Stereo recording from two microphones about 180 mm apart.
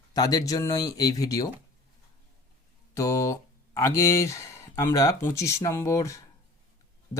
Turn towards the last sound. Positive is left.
turn(degrees=15)  # may be behind; listen again after turning